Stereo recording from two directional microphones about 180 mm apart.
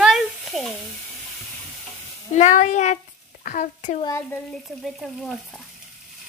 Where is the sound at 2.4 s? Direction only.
40° left (ahead or behind).